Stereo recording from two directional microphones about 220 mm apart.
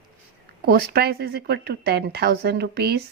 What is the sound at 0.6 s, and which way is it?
Speech, 45° right (ahead or behind).